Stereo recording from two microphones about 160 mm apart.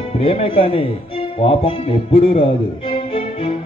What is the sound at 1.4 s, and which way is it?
Music, 35° left (ahead or behind).